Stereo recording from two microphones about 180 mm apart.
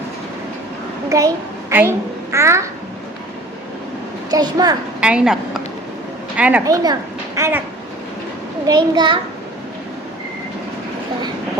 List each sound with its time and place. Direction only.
1.7 s a child's voice: 15° right (ahead or behind)
4.3 s a child's voice: 20° right (ahead or behind)
4.9 s a woman's voice: 5° right (ahead or behind)
6.7 s a child's voice: 20° right (ahead or behind)
8.6 s a child's voice: 25° right (ahead or behind)